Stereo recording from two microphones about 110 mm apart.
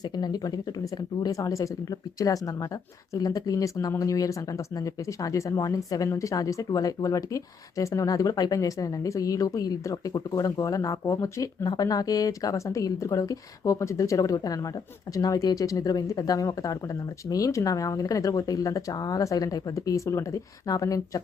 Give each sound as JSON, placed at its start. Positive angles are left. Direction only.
{"t": 0.2, "sound": "speech", "side_deg": 35}